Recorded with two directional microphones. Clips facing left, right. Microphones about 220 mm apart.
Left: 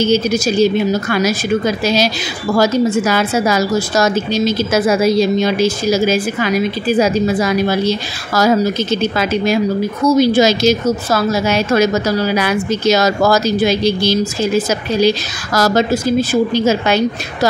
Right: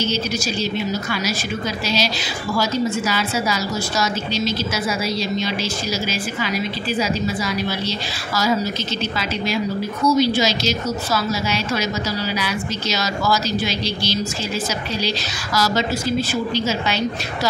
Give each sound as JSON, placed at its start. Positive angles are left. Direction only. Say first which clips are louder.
{"t": 0.0, "sound": "speech", "louder": "left 9 dB", "side_deg": 50}
{"t": 2.5, "sound": "speech", "louder": "left 8 dB", "side_deg": 50}